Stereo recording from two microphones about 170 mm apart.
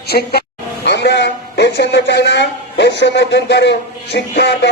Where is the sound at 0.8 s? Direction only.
90° left.